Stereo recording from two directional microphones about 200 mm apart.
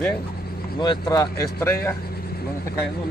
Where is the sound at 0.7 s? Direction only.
20° left (ahead or behind).